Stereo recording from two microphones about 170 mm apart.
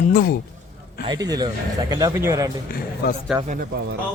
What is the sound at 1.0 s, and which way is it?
Speech, 20° right (ahead or behind).